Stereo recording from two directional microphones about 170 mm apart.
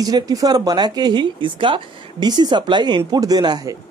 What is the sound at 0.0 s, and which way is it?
Speech, 20° right (ahead or behind).